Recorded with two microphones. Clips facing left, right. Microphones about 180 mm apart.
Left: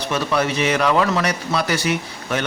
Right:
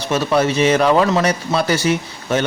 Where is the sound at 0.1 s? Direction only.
30° right (ahead or behind).